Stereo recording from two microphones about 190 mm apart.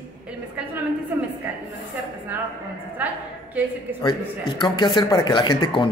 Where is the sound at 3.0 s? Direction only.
10° right (ahead or behind).